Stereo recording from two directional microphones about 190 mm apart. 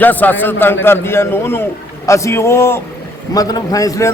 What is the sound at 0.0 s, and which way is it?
A man's voice, 10° left (ahead or behind).